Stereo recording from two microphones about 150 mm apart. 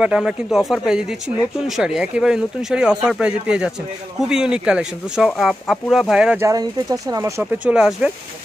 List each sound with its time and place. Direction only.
0.0 s speech: 5° right (ahead or behind)
6.4 s speech: 25° right (ahead or behind)
7.5 s speech: 5° right (ahead or behind)